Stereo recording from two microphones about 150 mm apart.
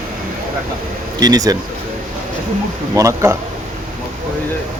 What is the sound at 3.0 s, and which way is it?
Speech, 20° right (ahead or behind).